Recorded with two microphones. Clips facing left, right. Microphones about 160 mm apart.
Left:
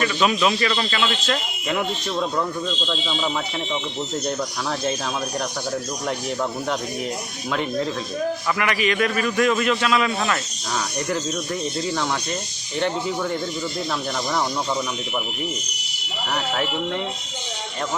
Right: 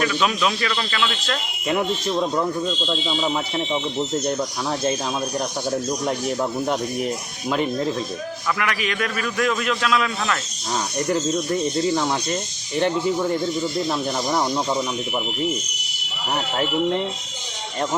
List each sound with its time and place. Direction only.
0.0 s a man's voice: centre (ahead or behind)
1.6 s speech: 20° right (ahead or behind)
8.5 s a man's voice: centre (ahead or behind)
16.3 s speech: 25° right (ahead or behind)